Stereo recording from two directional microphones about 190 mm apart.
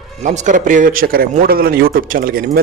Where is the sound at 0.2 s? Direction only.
40° right (ahead or behind).